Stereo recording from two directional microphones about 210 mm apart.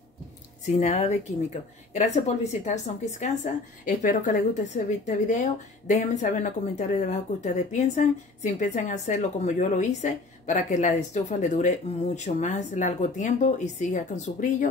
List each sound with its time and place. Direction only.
0.7 s speech: 35° left (ahead or behind)